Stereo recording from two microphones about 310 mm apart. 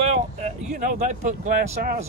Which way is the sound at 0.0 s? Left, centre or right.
Right.